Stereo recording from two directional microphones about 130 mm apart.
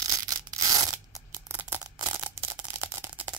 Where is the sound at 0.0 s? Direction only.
25° right (ahead or behind).